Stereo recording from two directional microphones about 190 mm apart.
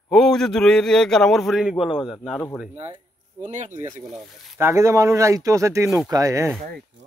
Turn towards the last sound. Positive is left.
turn(degrees=-15)  # may be behind; listen again after turning